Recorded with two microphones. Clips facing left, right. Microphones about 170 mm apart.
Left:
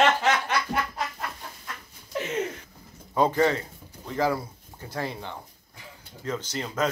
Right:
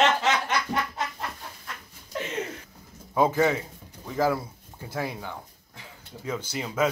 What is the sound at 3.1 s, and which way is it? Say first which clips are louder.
Speech: even; 5° right (ahead or behind).